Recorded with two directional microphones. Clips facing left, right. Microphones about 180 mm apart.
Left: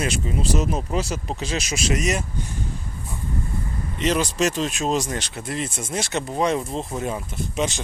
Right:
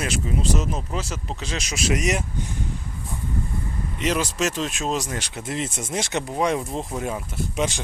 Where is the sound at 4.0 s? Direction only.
5° right (ahead or behind).